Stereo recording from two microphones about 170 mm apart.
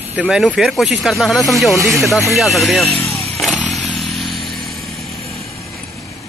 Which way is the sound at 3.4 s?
Centre (ahead or behind).